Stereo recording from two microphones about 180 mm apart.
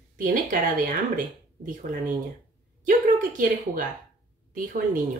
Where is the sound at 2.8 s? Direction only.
50° right (ahead or behind).